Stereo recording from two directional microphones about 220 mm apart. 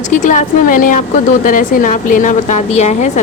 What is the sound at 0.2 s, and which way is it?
A woman's voice, 35° left (ahead or behind).